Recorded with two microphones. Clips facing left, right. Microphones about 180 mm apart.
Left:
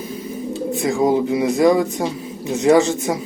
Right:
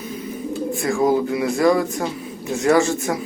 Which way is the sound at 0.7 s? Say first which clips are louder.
Left 1 dB; 20° left (ahead or behind).